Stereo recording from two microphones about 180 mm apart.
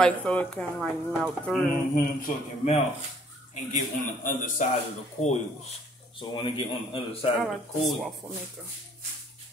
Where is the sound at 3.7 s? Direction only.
45° left (ahead or behind).